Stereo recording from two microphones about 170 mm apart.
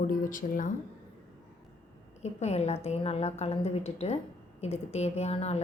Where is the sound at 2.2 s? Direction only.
40° left (ahead or behind).